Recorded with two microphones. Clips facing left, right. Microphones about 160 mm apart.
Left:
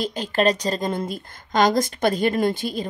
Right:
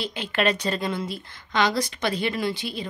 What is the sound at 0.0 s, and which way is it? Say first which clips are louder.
Speech: left 4 dB; 40° left (ahead or behind).